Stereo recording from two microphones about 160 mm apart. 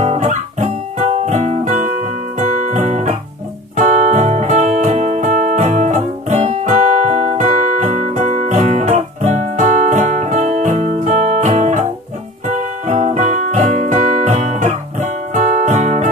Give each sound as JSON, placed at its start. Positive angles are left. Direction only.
{"t": 0.0, "sound": "guitar", "side_deg": -45}
{"t": 2.3, "sound": "music", "side_deg": -50}